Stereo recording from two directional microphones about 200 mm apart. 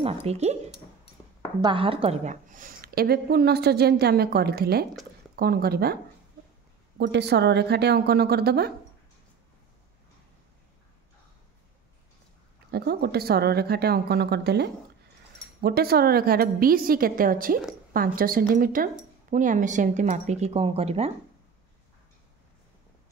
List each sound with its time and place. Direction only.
0.0 s a woman's voice: 30° right (ahead or behind); by 5.9 s 50° right (ahead or behind)
7.0 s a woman's voice: 55° right (ahead or behind)
12.7 s a woman's voice: 55° right (ahead or behind); by 21.1 s 30° right (ahead or behind)